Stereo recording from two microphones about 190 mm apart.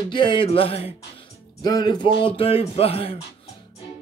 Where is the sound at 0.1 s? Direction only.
25° left (ahead or behind).